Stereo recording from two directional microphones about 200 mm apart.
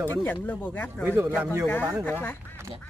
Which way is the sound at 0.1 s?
10° left (ahead or behind).